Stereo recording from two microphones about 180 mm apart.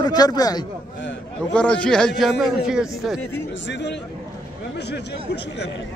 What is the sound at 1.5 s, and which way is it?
A man's voice, 5° left (ahead or behind).